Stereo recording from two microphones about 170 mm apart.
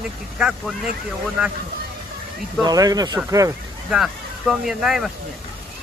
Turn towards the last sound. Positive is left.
turn(degrees=0)  # may be behind; listen again after turning